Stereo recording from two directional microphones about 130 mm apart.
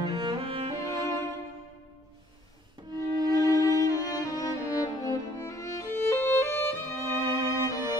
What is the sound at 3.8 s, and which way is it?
Music, 30° left (ahead or behind).